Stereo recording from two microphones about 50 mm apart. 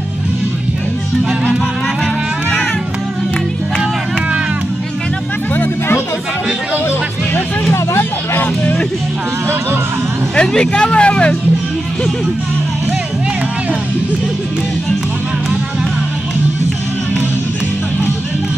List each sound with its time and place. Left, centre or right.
7.7 s vehicle: left
10.3 s speech: centre